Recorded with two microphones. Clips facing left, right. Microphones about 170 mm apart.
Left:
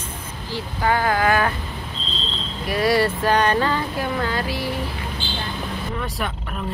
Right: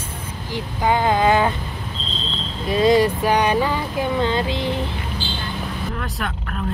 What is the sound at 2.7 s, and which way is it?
Speech, 20° right (ahead or behind).